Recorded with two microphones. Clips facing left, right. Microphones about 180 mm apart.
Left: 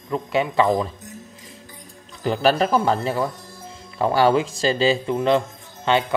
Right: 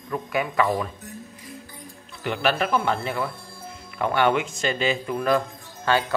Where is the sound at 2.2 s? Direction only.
35° left (ahead or behind).